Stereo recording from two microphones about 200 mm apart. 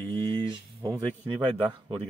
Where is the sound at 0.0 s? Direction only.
10° left (ahead or behind).